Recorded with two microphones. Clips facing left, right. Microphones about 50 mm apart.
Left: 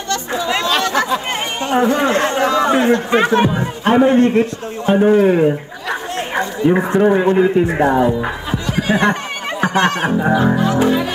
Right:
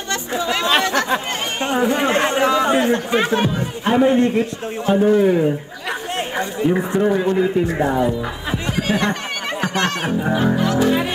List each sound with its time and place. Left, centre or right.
0.7 s a sound: right
1.0 s chatter: right
1.7 s speech: left
2.0 s speech: right
2.7 s a man's voice: left